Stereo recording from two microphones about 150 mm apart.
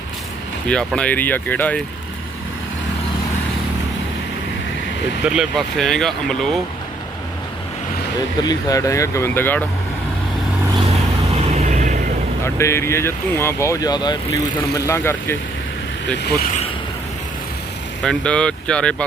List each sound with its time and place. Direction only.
0.7 s speech: 5° left (ahead or behind)
5.2 s speech: 5° right (ahead or behind)
8.4 s speech: 25° left (ahead or behind)
11.3 s a sound: 45° right (ahead or behind)
12.5 s speech: 20° left (ahead or behind)
18.0 s speech: 5° left (ahead or behind)